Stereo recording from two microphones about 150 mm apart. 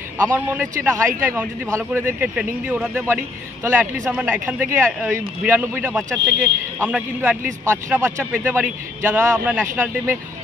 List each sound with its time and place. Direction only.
0.2 s speech: 15° right (ahead or behind)